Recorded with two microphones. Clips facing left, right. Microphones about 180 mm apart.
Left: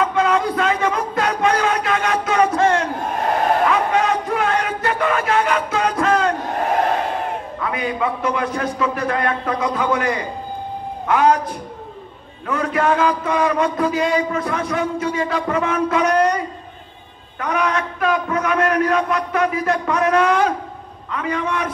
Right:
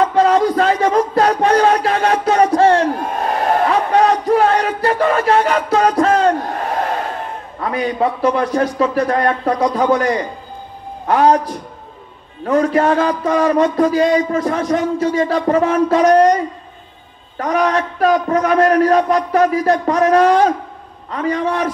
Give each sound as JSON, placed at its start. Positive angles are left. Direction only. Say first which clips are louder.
{"t": 0.0, "sound": "a sound", "louder": "right 5 dB", "side_deg": -35}
{"t": 7.6, "sound": "speech", "louder": "right 5 dB", "side_deg": -35}
{"t": 17.4, "sound": "speech", "louder": "right 5 dB", "side_deg": -35}